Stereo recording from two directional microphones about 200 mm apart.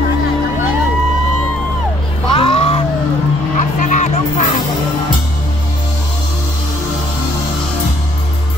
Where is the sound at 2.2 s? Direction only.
25° left (ahead or behind).